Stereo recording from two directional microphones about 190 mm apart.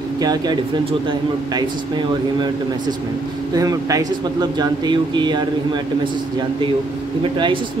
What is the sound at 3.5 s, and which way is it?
A man's voice, 20° right (ahead or behind).